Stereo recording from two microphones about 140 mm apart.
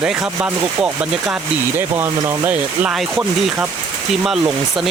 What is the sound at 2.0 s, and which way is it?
Speech, 15° right (ahead or behind).